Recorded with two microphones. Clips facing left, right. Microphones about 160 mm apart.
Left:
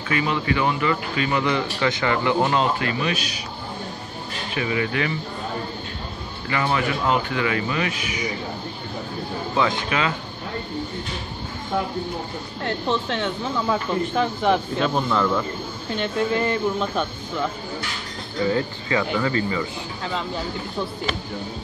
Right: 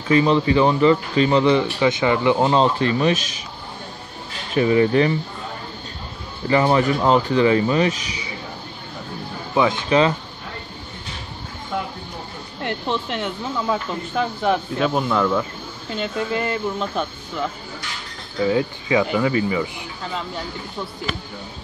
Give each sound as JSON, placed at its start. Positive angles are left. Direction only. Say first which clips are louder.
{"t": 0.1, "sound": "speech", "louder": "right 7 dB", "side_deg": -30}
{"t": 4.6, "sound": "speech", "louder": "right 9 dB", "side_deg": -35}
{"t": 6.5, "sound": "speech", "louder": "right 6 dB", "side_deg": -35}
{"t": 9.8, "sound": "speech", "louder": "right 7 dB", "side_deg": -30}
{"t": 12.6, "sound": "speech", "louder": "even", "side_deg": -10}